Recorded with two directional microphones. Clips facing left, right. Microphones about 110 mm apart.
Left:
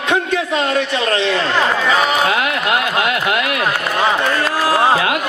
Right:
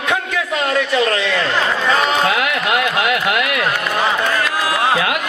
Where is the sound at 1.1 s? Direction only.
30° left (ahead or behind).